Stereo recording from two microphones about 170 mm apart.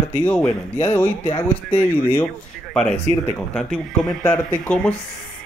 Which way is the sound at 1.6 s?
10° left (ahead or behind).